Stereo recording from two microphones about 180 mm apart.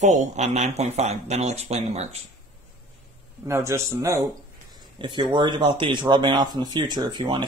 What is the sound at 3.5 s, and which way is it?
Speech, 15° right (ahead or behind).